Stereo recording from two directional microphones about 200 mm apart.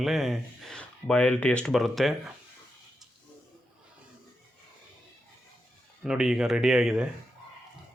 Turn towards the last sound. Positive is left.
turn(degrees=0)  # may be behind; listen again after turning